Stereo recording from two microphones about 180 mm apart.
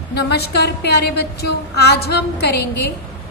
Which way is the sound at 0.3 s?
65° left (ahead or behind).